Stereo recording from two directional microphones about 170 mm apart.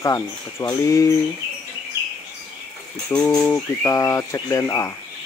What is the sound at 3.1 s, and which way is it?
Bird, 5° left (ahead or behind).